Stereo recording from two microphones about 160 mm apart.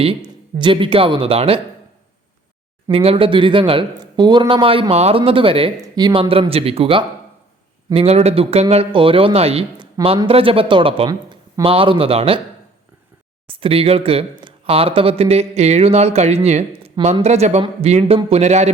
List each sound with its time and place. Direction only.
0.0 s speech: 30° right (ahead or behind)
2.9 s speech: 35° right (ahead or behind)
13.6 s speech: 35° right (ahead or behind)